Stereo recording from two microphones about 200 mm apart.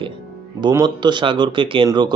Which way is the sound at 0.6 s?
20° right (ahead or behind).